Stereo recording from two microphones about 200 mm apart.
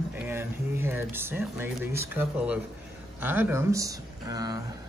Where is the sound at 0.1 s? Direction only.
10° right (ahead or behind).